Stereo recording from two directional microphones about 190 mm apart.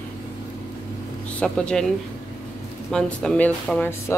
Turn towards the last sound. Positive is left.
turn(degrees=5)  # may be behind; listen again after turning